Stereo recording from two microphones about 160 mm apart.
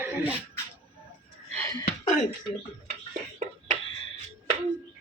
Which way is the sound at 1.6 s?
20° left (ahead or behind).